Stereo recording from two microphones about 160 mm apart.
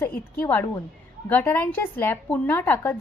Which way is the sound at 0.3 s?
15° left (ahead or behind).